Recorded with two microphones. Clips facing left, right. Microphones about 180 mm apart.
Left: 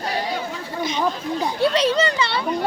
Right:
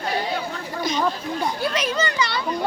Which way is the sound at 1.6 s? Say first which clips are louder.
Left 9 dB; 30° left (ahead or behind).